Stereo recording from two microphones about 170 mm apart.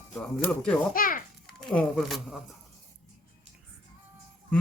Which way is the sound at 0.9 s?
55° left (ahead or behind).